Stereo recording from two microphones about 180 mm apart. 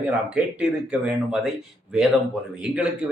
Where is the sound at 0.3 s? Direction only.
5° right (ahead or behind).